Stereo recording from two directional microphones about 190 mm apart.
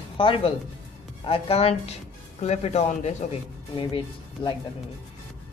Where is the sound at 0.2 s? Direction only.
25° left (ahead or behind).